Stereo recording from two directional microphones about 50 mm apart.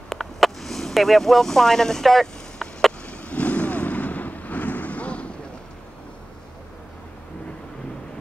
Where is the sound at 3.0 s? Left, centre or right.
Left.